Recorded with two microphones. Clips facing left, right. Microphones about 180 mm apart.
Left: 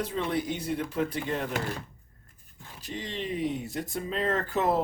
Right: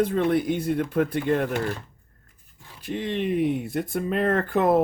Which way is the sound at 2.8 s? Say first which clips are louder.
Right 8 dB; 60° right (ahead or behind).